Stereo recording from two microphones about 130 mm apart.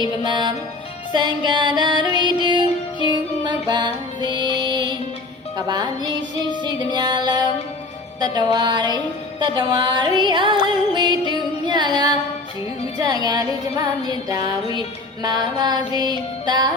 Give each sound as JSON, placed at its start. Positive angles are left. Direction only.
{"t": 0.3, "sound": "music", "side_deg": -35}